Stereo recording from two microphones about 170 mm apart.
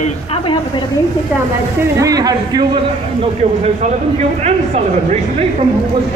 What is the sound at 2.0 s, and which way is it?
Speech, 20° right (ahead or behind).